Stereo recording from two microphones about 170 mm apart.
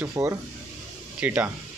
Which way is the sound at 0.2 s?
20° right (ahead or behind).